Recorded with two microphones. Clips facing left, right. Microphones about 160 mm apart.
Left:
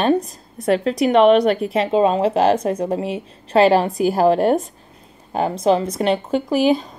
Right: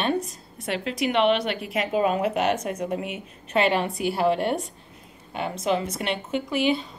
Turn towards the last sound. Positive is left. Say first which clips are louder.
# left 7 dB
turn(degrees=40)  # may be behind; listen again after turning